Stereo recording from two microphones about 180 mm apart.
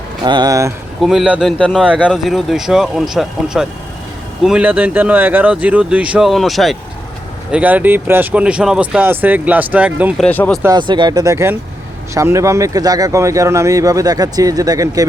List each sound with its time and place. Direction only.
0.3 s speech: 20° right (ahead or behind)
1.0 s speech: 5° right (ahead or behind)
10.2 s speech: 10° left (ahead or behind)
10.6 s speech: 20° right (ahead or behind)